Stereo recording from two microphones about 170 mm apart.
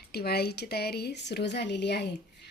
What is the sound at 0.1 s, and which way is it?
Speech, 70° left (ahead or behind).